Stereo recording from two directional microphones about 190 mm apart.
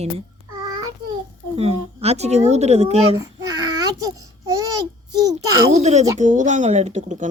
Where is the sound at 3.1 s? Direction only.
20° right (ahead or behind).